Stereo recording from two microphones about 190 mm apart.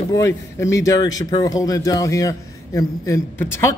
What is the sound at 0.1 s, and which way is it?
Speech, 15° left (ahead or behind).